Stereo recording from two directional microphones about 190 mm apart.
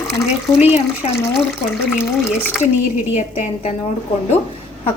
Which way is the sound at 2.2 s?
5° left (ahead or behind).